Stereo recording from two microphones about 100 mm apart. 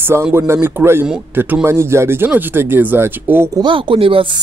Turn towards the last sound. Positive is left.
turn(degrees=-60)  # may be behind; listen again after turning